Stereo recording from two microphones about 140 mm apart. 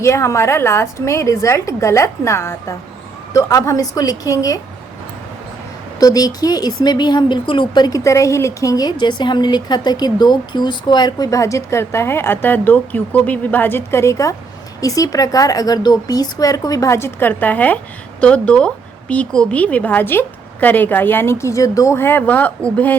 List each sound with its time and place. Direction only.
0.0 s speech: 20° left (ahead or behind)
6.0 s a woman's voice: 25° left (ahead or behind)